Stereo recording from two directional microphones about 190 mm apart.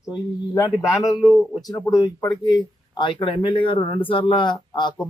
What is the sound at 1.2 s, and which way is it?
Speech, centre (ahead or behind).